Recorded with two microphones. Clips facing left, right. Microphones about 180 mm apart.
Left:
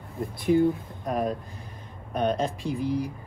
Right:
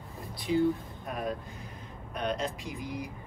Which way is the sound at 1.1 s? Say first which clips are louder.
Left 7 dB; 35° left (ahead or behind).